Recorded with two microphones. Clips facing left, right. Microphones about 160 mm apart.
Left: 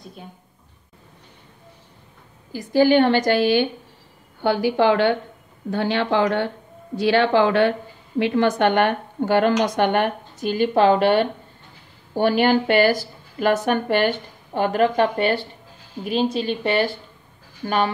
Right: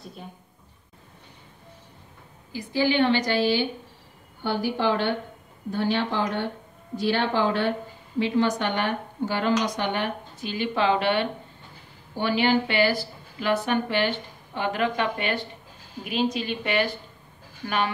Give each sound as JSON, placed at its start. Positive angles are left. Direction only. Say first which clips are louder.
{"t": 2.5, "sound": "a woman's voice", "louder": "left 8 dB", "side_deg": 45}
{"t": 4.4, "sound": "speech", "louder": "left 7 dB", "side_deg": 80}
{"t": 8.2, "sound": "a woman's voice", "louder": "left 5 dB", "side_deg": 60}